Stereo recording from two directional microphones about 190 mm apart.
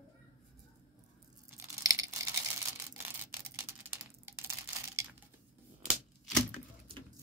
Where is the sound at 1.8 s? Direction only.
15° right (ahead or behind).